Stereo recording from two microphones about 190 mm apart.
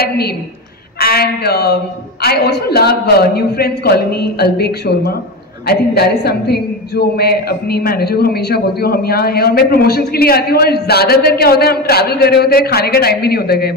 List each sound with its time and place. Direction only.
0.9 s a man's voice: 55° left (ahead or behind)